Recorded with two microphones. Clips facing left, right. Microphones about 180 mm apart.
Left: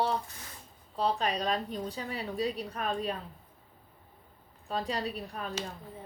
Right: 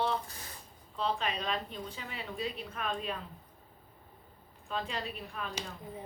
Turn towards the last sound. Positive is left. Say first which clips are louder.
# left 4 dB
turn(degrees=40)  # may be behind; listen again after turning